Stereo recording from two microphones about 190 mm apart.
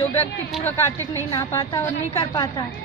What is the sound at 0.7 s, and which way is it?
A woman's voice, 10° left (ahead or behind).